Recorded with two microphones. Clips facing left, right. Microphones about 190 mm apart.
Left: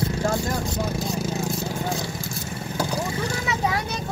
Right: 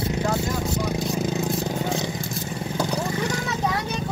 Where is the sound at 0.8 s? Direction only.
20° right (ahead or behind).